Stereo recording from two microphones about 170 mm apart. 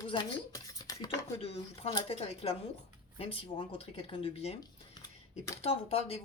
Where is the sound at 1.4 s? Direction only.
35° left (ahead or behind).